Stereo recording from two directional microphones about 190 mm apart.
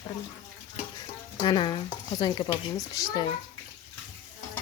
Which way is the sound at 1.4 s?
25° left (ahead or behind).